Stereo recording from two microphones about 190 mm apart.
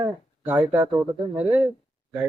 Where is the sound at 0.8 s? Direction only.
20° right (ahead or behind).